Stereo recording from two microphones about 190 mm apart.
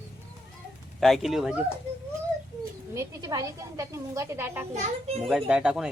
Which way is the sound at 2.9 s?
15° right (ahead or behind).